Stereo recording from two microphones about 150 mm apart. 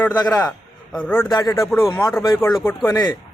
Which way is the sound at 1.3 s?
25° left (ahead or behind).